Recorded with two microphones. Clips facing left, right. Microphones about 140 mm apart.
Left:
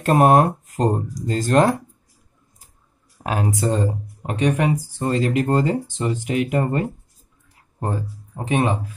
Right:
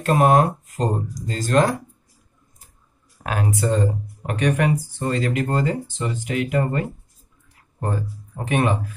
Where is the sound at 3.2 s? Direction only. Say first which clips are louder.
Left 1 dB; 30° left (ahead or behind).